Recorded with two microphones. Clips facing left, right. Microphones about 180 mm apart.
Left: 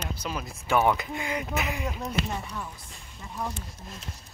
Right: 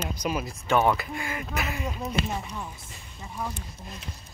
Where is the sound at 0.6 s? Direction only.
10° left (ahead or behind).